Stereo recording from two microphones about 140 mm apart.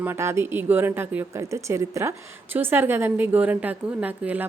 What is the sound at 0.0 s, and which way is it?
A woman's voice, 15° right (ahead or behind).